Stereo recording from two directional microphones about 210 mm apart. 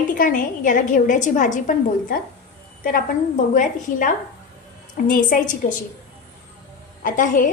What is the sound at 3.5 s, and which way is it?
A woman's voice, 40° left (ahead or behind).